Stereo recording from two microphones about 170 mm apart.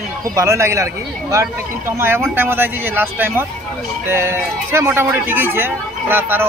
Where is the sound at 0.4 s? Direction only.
15° right (ahead or behind).